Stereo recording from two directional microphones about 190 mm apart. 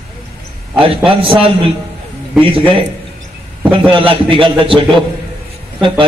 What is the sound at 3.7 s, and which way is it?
A man's voice, 25° right (ahead or behind).